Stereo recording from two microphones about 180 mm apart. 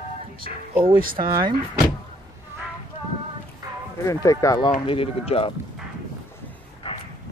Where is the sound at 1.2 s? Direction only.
25° right (ahead or behind).